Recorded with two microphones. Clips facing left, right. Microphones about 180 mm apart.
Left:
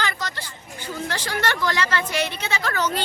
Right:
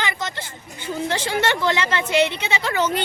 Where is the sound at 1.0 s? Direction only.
25° right (ahead or behind).